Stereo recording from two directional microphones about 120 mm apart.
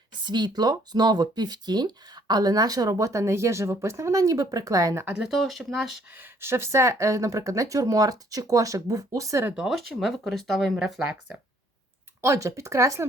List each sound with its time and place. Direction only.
0.3 s speech: 40° right (ahead or behind)
5.0 s speech: 10° right (ahead or behind)
6.1 s speech: 20° right (ahead or behind)
9.5 s speech: 5° right (ahead or behind)
12.2 s speech: 25° right (ahead or behind)